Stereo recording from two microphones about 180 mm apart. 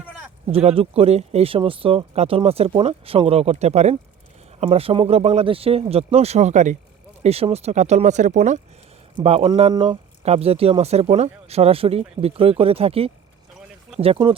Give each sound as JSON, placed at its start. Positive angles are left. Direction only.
{"t": 0.5, "sound": "speech", "side_deg": -30}